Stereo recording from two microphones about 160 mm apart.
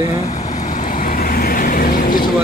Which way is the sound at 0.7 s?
55° left (ahead or behind).